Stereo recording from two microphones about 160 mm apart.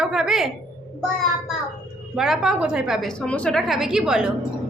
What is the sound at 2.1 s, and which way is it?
Speech, centre (ahead or behind).